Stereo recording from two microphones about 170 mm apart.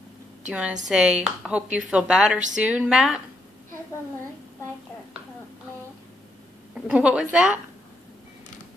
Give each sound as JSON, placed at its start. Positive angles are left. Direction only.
{"t": 0.5, "sound": "a woman's voice", "side_deg": -5}
{"t": 6.7, "sound": "a woman's voice", "side_deg": -5}